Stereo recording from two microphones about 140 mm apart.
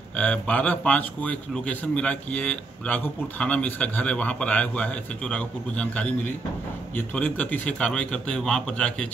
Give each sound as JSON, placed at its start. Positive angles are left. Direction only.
{"t": 0.1, "sound": "a man's voice", "side_deg": 10}